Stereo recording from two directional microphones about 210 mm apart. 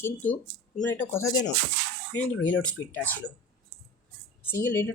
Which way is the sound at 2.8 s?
15° left (ahead or behind).